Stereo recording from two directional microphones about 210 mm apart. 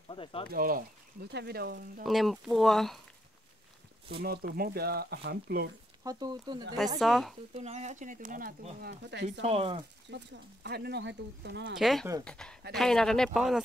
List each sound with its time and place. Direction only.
0.1 s speech: 25° left (ahead or behind)
0.5 s speech: 45° right (ahead or behind)
2.0 s speech: centre (ahead or behind)
4.2 s speech: 45° right (ahead or behind)
6.0 s speech: 20° right (ahead or behind)
7.0 s speech: centre (ahead or behind)
7.5 s speech: 30° right (ahead or behind); by 9.4 s 55° right (ahead or behind)
9.4 s speech: 25° right (ahead or behind)
10.1 s speech: 55° right (ahead or behind)
11.7 s speech: centre (ahead or behind)